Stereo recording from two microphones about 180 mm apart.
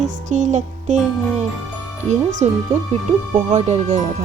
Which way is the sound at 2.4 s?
40° right (ahead or behind).